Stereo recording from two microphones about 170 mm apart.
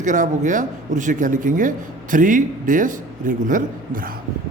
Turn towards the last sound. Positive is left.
turn(degrees=-50)  # may be behind; listen again after turning